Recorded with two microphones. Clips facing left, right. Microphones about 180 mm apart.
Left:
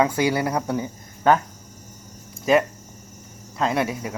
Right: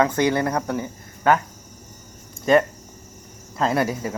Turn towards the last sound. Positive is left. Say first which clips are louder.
# right 2 dB
turn(degrees=0)  # may be behind; listen again after turning